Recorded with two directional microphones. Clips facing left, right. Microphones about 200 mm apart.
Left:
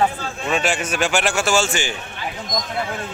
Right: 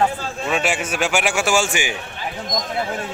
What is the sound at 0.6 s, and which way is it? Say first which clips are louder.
A man's voice: even; 5° right (ahead or behind).